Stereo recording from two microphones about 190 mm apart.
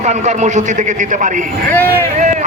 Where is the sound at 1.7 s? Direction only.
10° left (ahead or behind).